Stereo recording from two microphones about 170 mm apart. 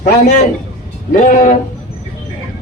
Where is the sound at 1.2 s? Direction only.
50° left (ahead or behind).